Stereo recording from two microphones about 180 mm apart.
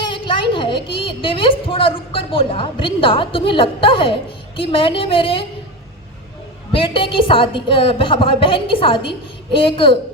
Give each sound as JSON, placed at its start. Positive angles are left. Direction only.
{"t": 0.1, "sound": "a woman's voice", "side_deg": 30}
{"t": 6.7, "sound": "a woman's voice", "side_deg": 30}